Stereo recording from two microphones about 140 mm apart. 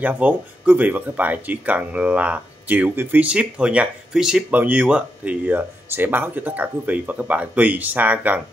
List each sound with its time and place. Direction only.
0.0 s speech: 10° right (ahead or behind)